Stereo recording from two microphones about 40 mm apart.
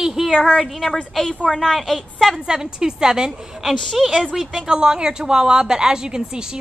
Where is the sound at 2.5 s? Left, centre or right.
Centre.